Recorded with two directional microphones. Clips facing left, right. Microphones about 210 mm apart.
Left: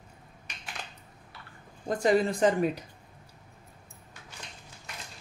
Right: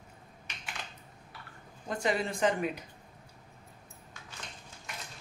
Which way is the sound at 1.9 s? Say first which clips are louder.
Left 7 dB; 40° left (ahead or behind).